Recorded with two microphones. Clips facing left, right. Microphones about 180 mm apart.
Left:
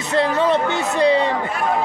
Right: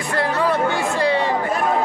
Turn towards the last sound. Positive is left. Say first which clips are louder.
# left 3 dB
turn(degrees=20)  # may be behind; listen again after turning